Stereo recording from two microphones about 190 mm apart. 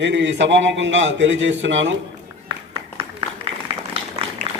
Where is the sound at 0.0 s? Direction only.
70° right (ahead or behind).